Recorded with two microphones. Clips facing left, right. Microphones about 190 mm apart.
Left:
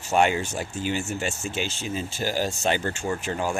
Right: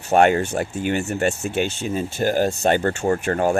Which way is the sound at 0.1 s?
55° right (ahead or behind).